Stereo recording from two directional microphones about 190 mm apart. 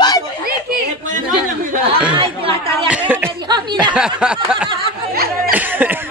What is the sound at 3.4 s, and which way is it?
Snicker, 25° right (ahead or behind).